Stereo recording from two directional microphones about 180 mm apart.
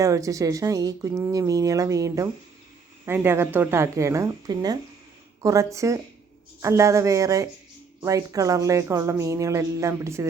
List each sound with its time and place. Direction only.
0.0 s speech: 20° right (ahead or behind)